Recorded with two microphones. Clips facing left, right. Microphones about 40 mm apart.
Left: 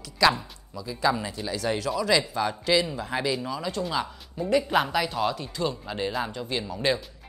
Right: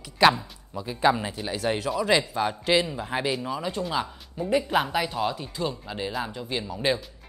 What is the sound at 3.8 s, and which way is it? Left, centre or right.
Speech, centre.